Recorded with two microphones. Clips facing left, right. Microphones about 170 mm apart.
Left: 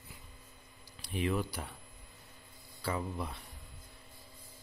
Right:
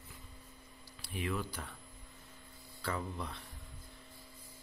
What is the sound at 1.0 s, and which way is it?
Speech, 20° left (ahead or behind).